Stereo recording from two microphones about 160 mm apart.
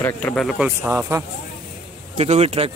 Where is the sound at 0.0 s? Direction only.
10° left (ahead or behind); by 1.2 s 10° right (ahead or behind).